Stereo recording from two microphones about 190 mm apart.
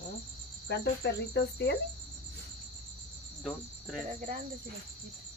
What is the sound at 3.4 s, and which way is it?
Cricket, centre (ahead or behind).